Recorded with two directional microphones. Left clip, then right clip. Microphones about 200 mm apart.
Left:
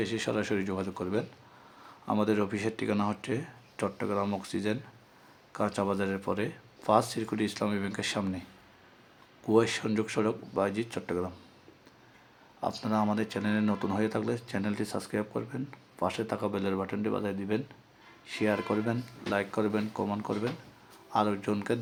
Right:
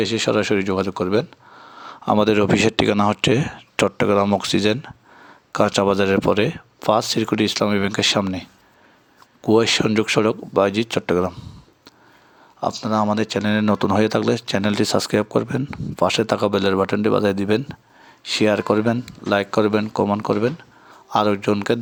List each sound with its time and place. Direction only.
0.0 s speech: 40° right (ahead or behind)
12.5 s speech: 30° right (ahead or behind)